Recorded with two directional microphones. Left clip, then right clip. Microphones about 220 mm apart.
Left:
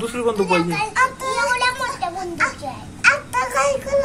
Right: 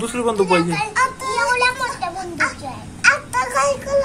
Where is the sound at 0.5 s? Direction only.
5° right (ahead or behind).